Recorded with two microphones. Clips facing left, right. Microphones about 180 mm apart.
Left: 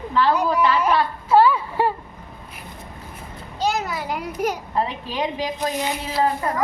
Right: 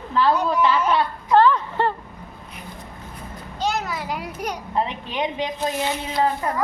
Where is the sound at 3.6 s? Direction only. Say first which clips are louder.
Left 2 dB; centre (ahead or behind).